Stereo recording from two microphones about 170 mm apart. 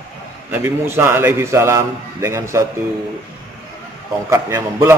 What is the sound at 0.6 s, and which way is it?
A man's voice, 15° right (ahead or behind).